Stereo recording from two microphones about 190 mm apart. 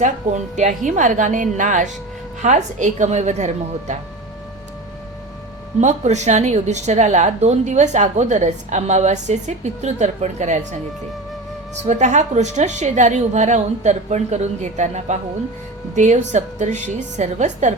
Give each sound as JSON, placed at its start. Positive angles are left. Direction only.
{"t": 0.5, "sound": "a woman's voice", "side_deg": -40}
{"t": 5.8, "sound": "a woman's voice", "side_deg": -40}
{"t": 11.8, "sound": "a woman's voice", "side_deg": -40}